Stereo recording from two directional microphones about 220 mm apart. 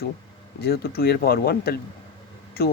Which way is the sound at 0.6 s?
45° left (ahead or behind).